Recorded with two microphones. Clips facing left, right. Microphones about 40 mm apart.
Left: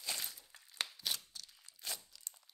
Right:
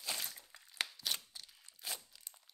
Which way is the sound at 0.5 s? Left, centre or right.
Centre.